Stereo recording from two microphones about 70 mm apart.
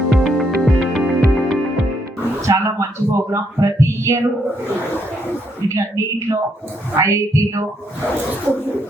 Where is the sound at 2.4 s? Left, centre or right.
Right.